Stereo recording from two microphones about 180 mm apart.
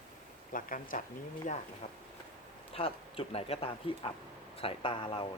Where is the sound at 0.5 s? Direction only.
50° left (ahead or behind).